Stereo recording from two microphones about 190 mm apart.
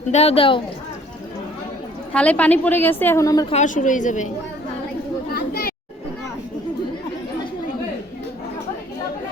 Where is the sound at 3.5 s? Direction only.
40° left (ahead or behind).